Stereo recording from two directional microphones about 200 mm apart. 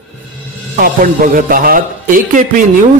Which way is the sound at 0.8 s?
45° right (ahead or behind).